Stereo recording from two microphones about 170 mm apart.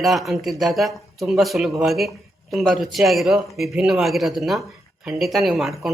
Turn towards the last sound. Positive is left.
turn(degrees=0)  # may be behind; listen again after turning